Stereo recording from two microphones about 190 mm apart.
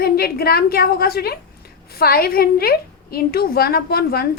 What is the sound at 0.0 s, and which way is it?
A woman's voice, 55° left (ahead or behind).